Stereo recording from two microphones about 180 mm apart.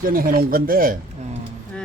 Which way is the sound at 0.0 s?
50° right (ahead or behind).